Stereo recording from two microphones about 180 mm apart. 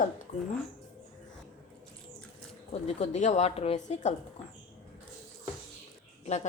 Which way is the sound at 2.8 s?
35° left (ahead or behind).